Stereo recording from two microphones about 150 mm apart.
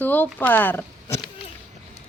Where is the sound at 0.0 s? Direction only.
10° left (ahead or behind).